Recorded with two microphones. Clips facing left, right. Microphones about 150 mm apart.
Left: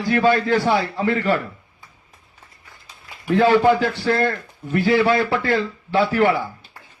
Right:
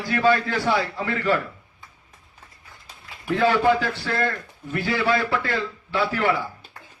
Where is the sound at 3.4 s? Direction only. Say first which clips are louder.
Left 4 dB; 40° left (ahead or behind).